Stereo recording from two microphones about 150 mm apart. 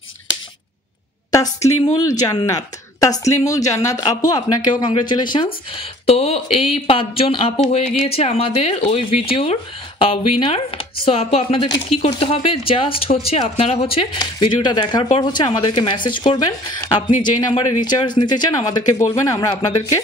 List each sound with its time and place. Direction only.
1.3 s a woman's voice: 25° left (ahead or behind)